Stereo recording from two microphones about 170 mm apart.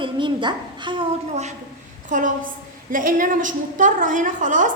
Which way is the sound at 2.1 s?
50° right (ahead or behind).